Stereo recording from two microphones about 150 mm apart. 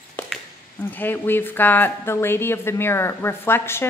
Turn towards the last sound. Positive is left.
turn(degrees=15)  # may be behind; listen again after turning